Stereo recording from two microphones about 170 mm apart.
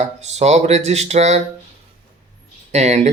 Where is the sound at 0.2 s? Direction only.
40° right (ahead or behind).